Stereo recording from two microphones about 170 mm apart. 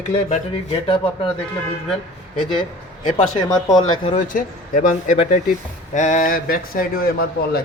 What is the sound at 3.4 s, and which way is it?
Speech, 25° left (ahead or behind).